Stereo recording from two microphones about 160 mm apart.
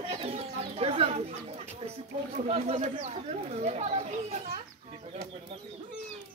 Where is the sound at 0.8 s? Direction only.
40° right (ahead or behind).